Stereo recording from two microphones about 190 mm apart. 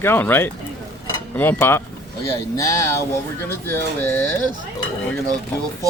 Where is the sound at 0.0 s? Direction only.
10° left (ahead or behind).